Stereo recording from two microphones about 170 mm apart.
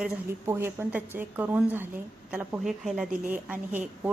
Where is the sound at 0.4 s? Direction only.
15° right (ahead or behind).